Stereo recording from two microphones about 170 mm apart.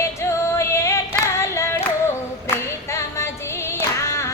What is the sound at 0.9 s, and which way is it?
Singing, 15° left (ahead or behind).